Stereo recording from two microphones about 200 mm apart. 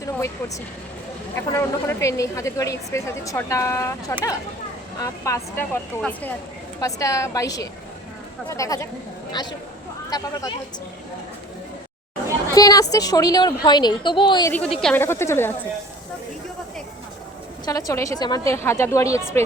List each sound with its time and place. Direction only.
0.0 s vehicle: 15° left (ahead or behind)
1.4 s speech: 15° left (ahead or behind)
4.9 s a woman's voice: 15° left (ahead or behind)
12.5 s a woman's voice: 20° left (ahead or behind)
14.8 s speech: 5° left (ahead or behind)
17.7 s speech: 15° left (ahead or behind)